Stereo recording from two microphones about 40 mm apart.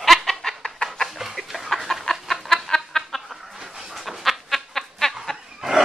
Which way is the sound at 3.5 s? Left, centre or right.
Centre.